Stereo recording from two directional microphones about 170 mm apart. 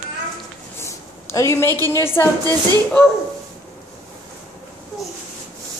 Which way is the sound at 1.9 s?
15° left (ahead or behind).